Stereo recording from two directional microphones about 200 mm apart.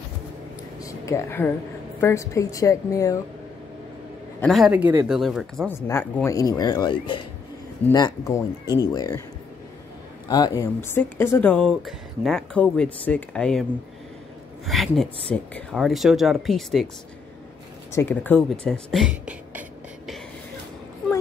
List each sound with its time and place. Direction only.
0.7 s a sound: 15° left (ahead or behind)
2.0 s speech: 15° left (ahead or behind)
4.4 s speech: centre (ahead or behind)
5.9 s speech: 10° left (ahead or behind)
10.2 s speech: 20° left (ahead or behind); by 13.7 s 5° left (ahead or behind)
14.7 s speech: centre (ahead or behind)
17.9 s speech: 10° left (ahead or behind)